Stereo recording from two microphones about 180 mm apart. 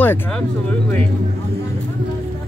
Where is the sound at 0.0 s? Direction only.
10° left (ahead or behind).